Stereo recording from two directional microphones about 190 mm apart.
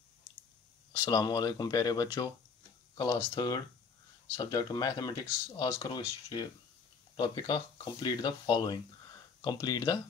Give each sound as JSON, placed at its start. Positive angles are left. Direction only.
{"t": 0.9, "sound": "speech", "side_deg": 25}
{"t": 5.8, "sound": "speech", "side_deg": 25}